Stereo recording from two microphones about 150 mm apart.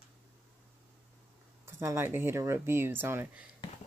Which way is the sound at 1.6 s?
20° right (ahead or behind).